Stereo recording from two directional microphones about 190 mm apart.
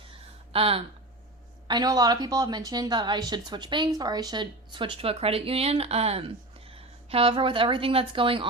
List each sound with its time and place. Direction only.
0.5 s a woman's voice: 30° right (ahead or behind)